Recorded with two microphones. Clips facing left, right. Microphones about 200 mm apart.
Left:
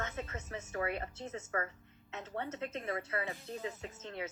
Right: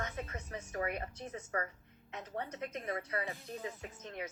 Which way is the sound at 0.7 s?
15° right (ahead or behind).